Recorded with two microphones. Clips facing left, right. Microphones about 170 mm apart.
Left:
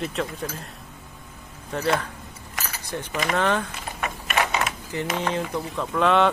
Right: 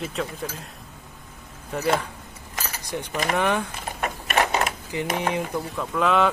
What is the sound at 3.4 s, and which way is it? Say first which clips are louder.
Mantra: left 1 dB; 15° right (ahead or behind).